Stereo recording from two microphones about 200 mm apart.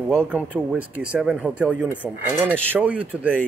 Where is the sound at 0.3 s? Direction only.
10° right (ahead or behind).